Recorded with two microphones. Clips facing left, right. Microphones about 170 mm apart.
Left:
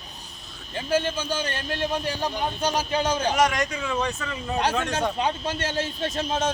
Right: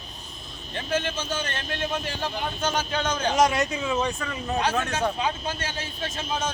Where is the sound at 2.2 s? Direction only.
35° left (ahead or behind).